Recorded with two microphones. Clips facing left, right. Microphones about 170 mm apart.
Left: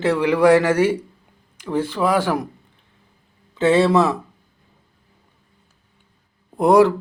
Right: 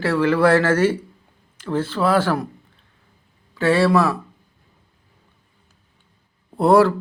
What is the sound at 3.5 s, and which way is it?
Speech, 20° left (ahead or behind).